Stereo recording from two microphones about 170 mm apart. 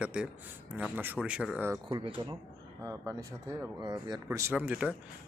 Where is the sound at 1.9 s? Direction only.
30° right (ahead or behind).